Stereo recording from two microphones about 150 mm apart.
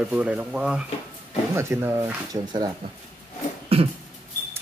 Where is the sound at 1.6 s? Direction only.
15° right (ahead or behind).